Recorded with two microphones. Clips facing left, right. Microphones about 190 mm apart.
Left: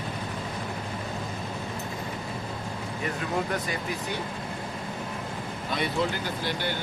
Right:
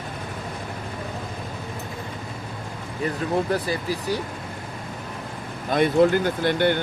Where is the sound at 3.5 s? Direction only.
35° right (ahead or behind).